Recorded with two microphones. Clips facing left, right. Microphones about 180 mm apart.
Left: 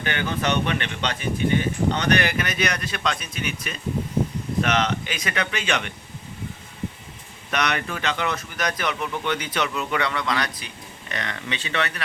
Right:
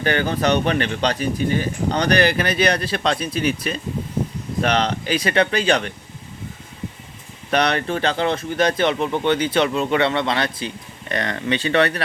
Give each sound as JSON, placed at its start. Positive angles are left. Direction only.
{"t": 0.0, "sound": "speech", "side_deg": -35}
{"t": 7.5, "sound": "speech", "side_deg": -30}
{"t": 11.1, "sound": "speech", "side_deg": -40}